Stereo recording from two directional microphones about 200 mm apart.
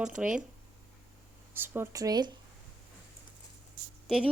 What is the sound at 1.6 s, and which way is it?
Speech, 10° right (ahead or behind).